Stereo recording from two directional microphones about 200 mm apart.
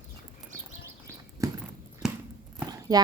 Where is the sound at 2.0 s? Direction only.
5° right (ahead or behind).